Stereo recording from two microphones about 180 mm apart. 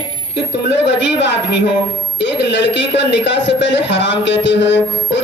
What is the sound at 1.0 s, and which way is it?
A man's voice, 75° left (ahead or behind).